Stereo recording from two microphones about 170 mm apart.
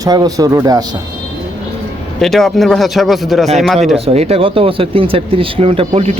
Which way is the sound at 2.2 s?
Centre (ahead or behind).